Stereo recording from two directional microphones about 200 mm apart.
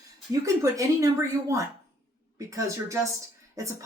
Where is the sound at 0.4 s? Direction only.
15° right (ahead or behind).